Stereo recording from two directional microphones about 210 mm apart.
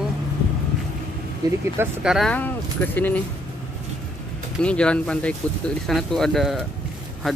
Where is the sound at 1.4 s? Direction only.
20° right (ahead or behind).